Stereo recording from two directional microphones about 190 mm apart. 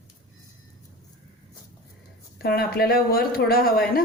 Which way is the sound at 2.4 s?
55° left (ahead or behind).